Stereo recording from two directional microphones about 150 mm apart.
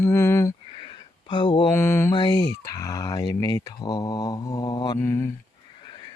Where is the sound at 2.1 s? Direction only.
30° left (ahead or behind).